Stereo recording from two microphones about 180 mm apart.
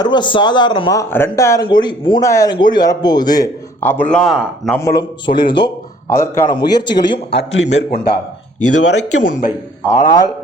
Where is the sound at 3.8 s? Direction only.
10° left (ahead or behind).